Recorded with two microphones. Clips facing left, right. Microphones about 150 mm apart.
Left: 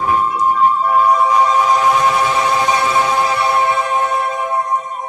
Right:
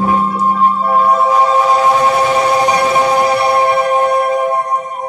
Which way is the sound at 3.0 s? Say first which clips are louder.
Right 4 dB; 35° right (ahead or behind).